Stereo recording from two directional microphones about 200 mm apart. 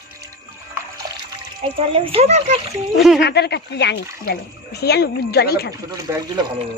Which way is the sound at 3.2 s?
55° left (ahead or behind).